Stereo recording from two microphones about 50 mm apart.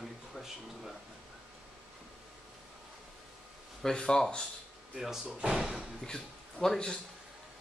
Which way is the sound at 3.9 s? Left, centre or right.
Centre.